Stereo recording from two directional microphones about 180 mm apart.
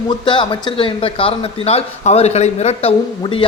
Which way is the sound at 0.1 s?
25° left (ahead or behind).